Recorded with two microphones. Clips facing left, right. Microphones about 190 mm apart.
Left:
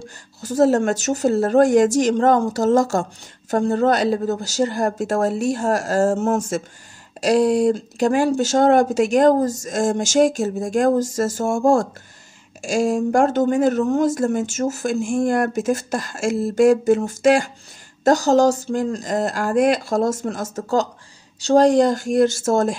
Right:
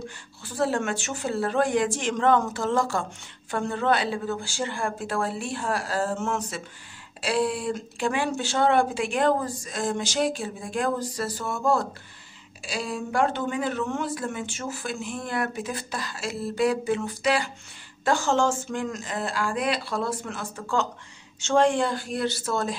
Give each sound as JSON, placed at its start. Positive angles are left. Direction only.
{"t": 0.4, "sound": "a woman's voice", "side_deg": 40}